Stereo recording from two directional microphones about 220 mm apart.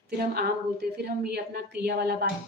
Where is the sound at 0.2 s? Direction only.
45° right (ahead or behind).